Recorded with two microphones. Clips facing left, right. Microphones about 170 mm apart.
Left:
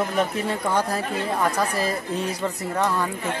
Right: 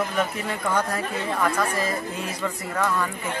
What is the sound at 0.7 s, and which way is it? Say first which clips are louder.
Speech: right 1 dB; 30° left (ahead or behind).